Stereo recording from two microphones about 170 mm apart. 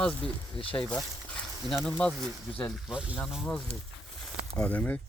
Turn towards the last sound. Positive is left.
turn(degrees=10)  # may be behind; listen again after turning